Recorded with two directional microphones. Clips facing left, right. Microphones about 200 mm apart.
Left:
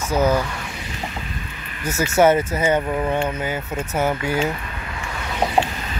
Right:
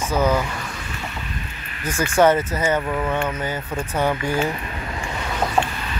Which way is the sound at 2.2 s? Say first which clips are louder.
Left 1 dB; 10° left (ahead or behind).